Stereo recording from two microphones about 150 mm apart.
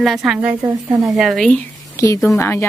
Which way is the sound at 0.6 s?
20° right (ahead or behind).